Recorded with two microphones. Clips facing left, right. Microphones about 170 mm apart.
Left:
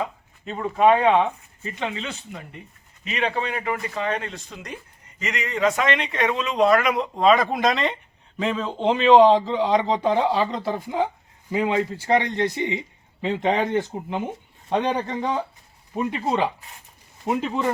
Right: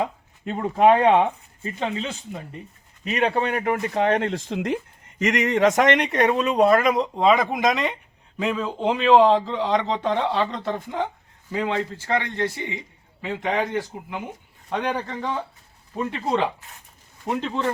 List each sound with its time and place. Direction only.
0.4 s speech: 40° right (ahead or behind)
3.0 s speech: 45° right (ahead or behind); by 6.2 s 65° right (ahead or behind)
6.7 s speech: 40° right (ahead or behind)
7.3 s speech: 15° right (ahead or behind); by 17.7 s 10° left (ahead or behind)